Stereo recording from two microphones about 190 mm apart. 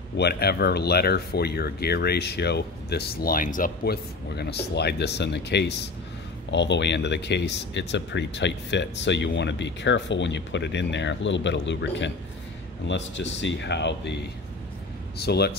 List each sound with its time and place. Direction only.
0.2 s speech: 55° left (ahead or behind)
15.1 s speech: 60° left (ahead or behind)